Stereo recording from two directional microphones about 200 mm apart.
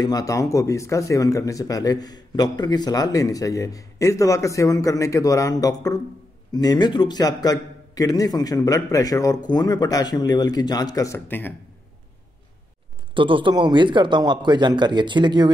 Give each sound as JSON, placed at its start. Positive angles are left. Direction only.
{"t": 0.0, "sound": "a man's voice", "side_deg": 20}
{"t": 13.1, "sound": "speech", "side_deg": -25}